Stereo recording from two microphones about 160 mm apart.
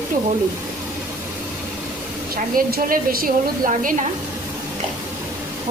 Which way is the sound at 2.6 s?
60° right (ahead or behind).